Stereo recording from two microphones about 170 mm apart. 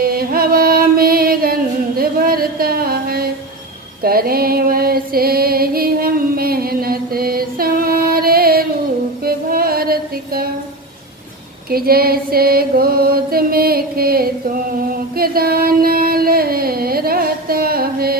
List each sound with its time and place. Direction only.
0.0 s music: 60° right (ahead or behind)
9.2 s female singing: 60° right (ahead or behind)
11.7 s chant: 60° right (ahead or behind)
15.1 s a sound: 60° right (ahead or behind)